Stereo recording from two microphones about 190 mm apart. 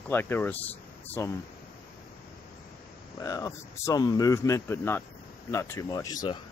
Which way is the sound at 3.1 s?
20° left (ahead or behind).